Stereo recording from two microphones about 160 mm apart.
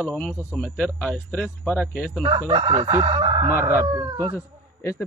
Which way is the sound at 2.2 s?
30° right (ahead or behind).